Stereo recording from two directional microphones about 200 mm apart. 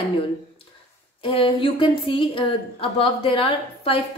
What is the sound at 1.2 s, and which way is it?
A woman's voice, 25° left (ahead or behind).